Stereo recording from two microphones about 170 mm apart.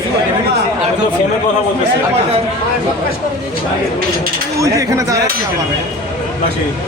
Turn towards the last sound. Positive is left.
turn(degrees=-20)  # may be behind; listen again after turning